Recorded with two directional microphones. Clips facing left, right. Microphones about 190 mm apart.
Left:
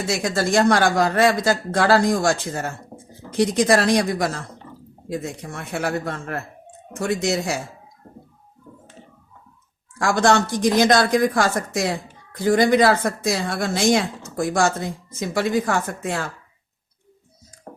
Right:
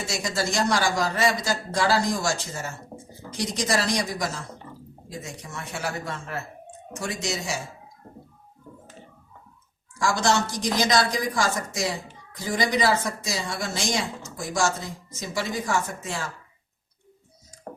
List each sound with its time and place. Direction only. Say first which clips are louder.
0.0 s a woman's voice: left 6 dB; 55° left (ahead or behind)
9.9 s a woman's voice: left 5 dB; 55° left (ahead or behind)